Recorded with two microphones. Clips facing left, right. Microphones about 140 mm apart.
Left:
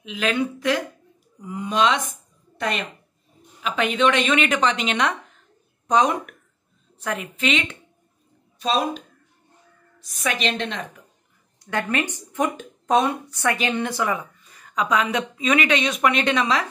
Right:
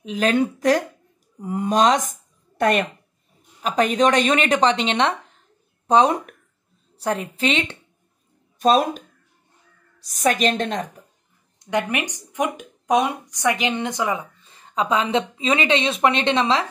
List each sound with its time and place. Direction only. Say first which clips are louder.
0.0 s a woman's voice: right 4 dB; 40° right (ahead or behind)
3.6 s a woman's voice: right 2 dB; 40° right (ahead or behind)
8.5 s a woman's voice: right 5 dB; 45° right (ahead or behind)
11.6 s a woman's voice: right 1 dB; 15° right (ahead or behind)